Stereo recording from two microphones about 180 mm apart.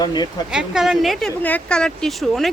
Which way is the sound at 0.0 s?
25° left (ahead or behind).